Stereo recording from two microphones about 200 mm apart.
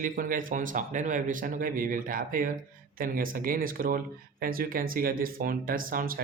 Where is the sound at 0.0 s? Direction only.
40° right (ahead or behind).